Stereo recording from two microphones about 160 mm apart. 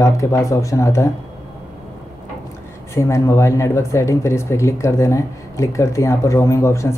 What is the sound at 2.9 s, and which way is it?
Speech, 20° left (ahead or behind).